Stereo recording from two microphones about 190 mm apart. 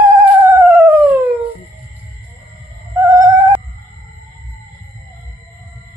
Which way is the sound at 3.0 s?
15° right (ahead or behind).